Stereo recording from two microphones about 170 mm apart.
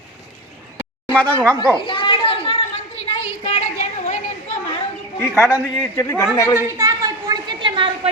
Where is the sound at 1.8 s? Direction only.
30° left (ahead or behind).